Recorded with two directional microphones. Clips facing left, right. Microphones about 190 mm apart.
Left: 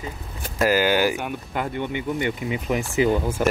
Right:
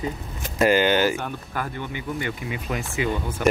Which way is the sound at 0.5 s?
5° left (ahead or behind).